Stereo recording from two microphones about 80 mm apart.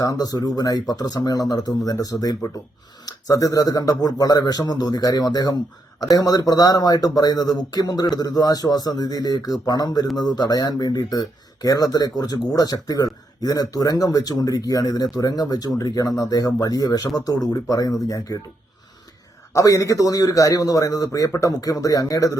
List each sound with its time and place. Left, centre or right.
0.0 s speech: left
19.5 s speech: left